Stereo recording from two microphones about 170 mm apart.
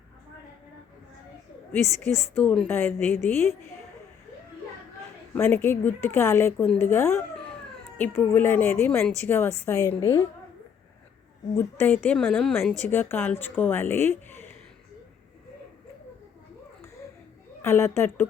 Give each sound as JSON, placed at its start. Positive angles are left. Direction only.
{"t": 2.0, "sound": "a woman's voice", "side_deg": 0}
{"t": 5.3, "sound": "a woman's voice", "side_deg": 10}
{"t": 11.5, "sound": "a woman's voice", "side_deg": 10}
{"t": 17.6, "sound": "speech", "side_deg": 15}